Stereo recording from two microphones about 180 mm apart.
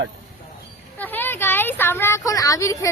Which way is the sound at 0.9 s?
10° left (ahead or behind).